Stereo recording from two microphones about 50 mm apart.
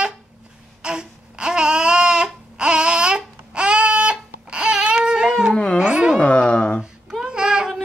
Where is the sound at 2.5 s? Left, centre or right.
Centre.